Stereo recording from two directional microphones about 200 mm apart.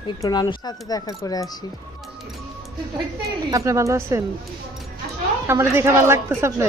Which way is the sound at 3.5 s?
15° right (ahead or behind).